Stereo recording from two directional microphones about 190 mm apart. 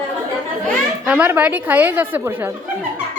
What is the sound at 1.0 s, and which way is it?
A woman's voice, 10° right (ahead or behind).